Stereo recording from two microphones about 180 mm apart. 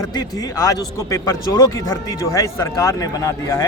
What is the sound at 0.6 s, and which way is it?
A man's voice, 20° left (ahead or behind).